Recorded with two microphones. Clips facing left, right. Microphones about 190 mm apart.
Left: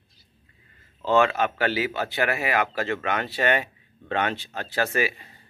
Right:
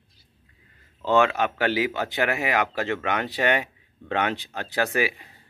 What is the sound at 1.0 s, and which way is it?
Speech, 15° right (ahead or behind).